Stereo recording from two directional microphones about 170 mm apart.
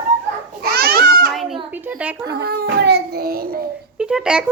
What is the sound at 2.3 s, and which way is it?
A child's voice, 70° right (ahead or behind).